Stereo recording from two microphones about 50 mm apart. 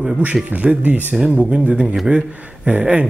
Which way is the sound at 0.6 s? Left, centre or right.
Right.